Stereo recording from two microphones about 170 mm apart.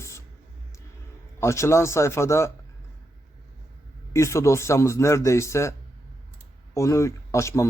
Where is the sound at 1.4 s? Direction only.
15° left (ahead or behind).